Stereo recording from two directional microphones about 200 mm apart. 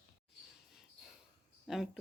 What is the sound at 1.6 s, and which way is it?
Speech, centre (ahead or behind).